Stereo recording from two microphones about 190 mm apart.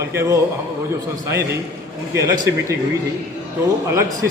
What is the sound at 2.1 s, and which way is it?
Speech, 15° right (ahead or behind).